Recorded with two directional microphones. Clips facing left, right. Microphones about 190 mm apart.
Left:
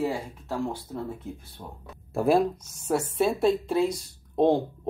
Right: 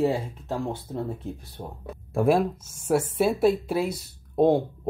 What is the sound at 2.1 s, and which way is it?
Speech, centre (ahead or behind).